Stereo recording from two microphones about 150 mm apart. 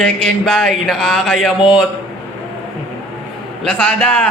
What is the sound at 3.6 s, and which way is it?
Speech, 5° left (ahead or behind).